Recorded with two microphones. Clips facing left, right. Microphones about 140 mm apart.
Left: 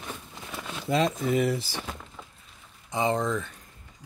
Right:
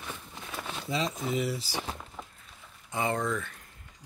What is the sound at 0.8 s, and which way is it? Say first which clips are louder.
Speech: left 7 dB; 55° left (ahead or behind).